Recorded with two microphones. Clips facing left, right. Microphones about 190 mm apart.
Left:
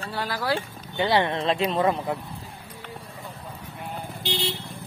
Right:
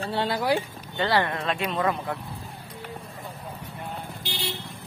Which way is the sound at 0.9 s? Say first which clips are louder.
Left 2 dB; 20° left (ahead or behind).